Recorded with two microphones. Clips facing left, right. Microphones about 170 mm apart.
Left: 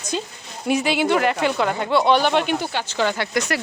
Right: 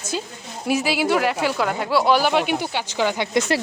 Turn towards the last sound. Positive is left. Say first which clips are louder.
# right 2 dB
turn(degrees=-25)  # may be behind; listen again after turning